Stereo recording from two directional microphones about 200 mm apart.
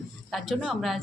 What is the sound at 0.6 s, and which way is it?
Speech, centre (ahead or behind).